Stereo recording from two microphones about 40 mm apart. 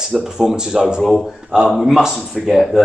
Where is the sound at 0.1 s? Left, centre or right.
Centre.